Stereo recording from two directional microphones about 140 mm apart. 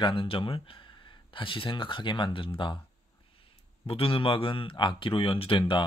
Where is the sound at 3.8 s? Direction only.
40° left (ahead or behind).